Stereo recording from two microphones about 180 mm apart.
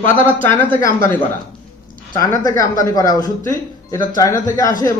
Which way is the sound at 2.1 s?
20° left (ahead or behind).